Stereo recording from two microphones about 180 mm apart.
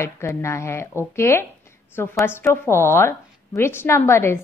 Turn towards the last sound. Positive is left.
turn(degrees=15)  # may be behind; listen again after turning